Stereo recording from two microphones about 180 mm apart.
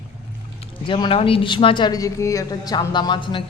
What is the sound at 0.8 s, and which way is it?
A woman's voice, 30° left (ahead or behind).